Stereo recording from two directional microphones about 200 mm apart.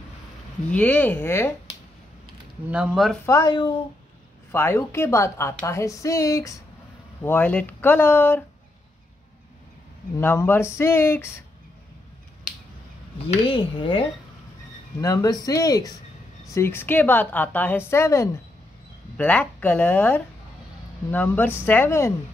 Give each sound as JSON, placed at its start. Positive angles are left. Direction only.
{"t": 0.7, "sound": "a woman's voice", "side_deg": 5}
{"t": 2.7, "sound": "speech", "side_deg": -5}
{"t": 3.3, "sound": "speech", "side_deg": 15}
{"t": 4.5, "sound": "a woman's voice", "side_deg": 10}
{"t": 10.1, "sound": "a woman's voice", "side_deg": 10}
{"t": 13.3, "sound": "a woman's voice", "side_deg": 25}